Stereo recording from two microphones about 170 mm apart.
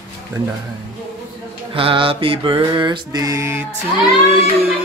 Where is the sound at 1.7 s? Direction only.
30° right (ahead or behind); by 3.6 s 15° right (ahead or behind).